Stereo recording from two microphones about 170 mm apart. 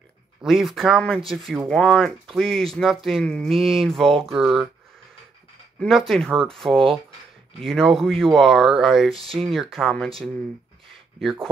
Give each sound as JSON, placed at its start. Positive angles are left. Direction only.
{"t": 0.4, "sound": "speech", "side_deg": 0}
{"t": 5.8, "sound": "speech", "side_deg": 0}
{"t": 9.1, "sound": "speech", "side_deg": -35}
{"t": 9.4, "sound": "speech", "side_deg": 0}